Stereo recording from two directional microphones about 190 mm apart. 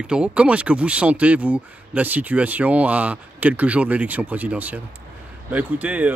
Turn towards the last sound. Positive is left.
turn(degrees=-10)  # may be behind; listen again after turning